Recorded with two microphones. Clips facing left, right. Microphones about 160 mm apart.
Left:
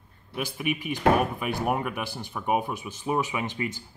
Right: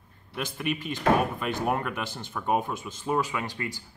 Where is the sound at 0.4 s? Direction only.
10° left (ahead or behind).